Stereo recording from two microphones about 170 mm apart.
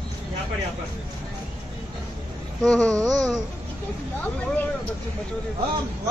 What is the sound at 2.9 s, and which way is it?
Babbling, 20° right (ahead or behind).